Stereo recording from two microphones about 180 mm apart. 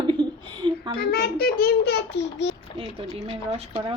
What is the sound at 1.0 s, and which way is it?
A child's voice, 60° left (ahead or behind).